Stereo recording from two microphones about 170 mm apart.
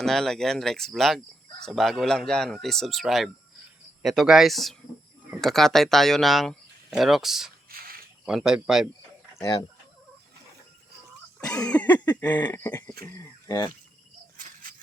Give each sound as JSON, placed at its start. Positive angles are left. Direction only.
{"t": 0.0, "sound": "speech", "side_deg": 0}
{"t": 7.7, "sound": "a sound", "side_deg": -60}
{"t": 8.2, "sound": "speech", "side_deg": -5}
{"t": 9.3, "sound": "speech", "side_deg": 20}
{"t": 11.4, "sound": "a sound", "side_deg": 5}
{"t": 13.1, "sound": "speech", "side_deg": 20}
{"t": 14.3, "sound": "cricket", "side_deg": -55}